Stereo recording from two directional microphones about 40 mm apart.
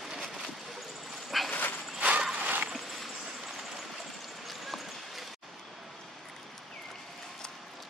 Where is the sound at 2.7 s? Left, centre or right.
Centre.